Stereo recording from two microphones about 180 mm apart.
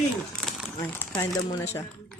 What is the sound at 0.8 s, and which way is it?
Speech, 15° left (ahead or behind).